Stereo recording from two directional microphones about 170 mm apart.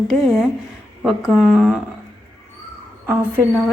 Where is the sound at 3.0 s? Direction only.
10° right (ahead or behind).